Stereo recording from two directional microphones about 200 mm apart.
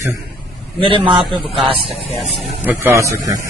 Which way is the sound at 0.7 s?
25° right (ahead or behind).